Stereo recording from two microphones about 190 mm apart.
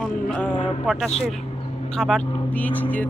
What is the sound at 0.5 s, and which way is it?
Speech, 30° left (ahead or behind).